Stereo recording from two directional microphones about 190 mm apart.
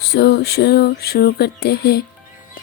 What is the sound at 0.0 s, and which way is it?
Speech, 60° left (ahead or behind).